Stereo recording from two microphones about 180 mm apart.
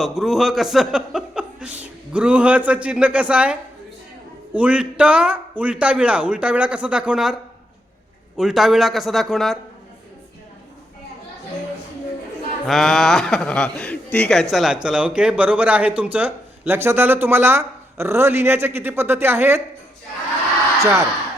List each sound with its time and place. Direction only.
0.0 s a man's voice: centre (ahead or behind)
8.4 s a man's voice: centre (ahead or behind)
12.6 s a man's voice: centre (ahead or behind)
20.8 s speech: 15° right (ahead or behind)